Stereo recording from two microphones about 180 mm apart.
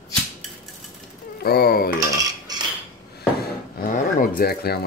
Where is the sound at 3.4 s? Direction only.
50° left (ahead or behind).